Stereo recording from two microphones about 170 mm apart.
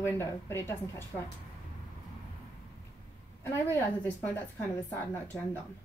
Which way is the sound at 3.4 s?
15° left (ahead or behind).